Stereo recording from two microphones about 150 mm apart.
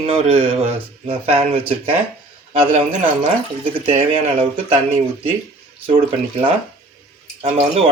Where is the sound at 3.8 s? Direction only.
40° right (ahead or behind).